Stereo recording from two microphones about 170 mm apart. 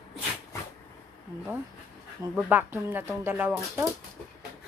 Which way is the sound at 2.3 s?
10° right (ahead or behind).